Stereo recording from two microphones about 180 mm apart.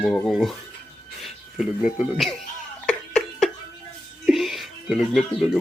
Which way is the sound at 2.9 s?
5° left (ahead or behind).